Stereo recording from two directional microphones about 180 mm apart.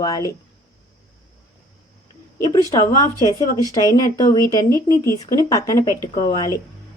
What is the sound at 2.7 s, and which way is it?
Speech, 20° left (ahead or behind).